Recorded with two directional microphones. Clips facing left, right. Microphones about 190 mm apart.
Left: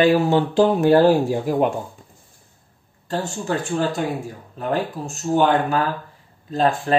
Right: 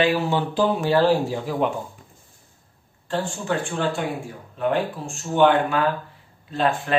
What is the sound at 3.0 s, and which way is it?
Speech, 40° left (ahead or behind).